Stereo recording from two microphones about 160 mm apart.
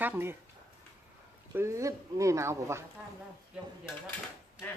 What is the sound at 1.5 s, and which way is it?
Speech, 20° right (ahead or behind).